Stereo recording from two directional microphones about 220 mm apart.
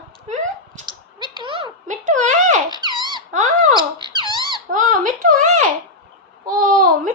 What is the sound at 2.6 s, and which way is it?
Squeak, 20° right (ahead or behind).